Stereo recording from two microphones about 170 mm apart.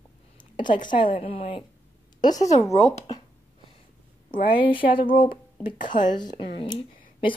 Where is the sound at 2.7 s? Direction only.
40° left (ahead or behind).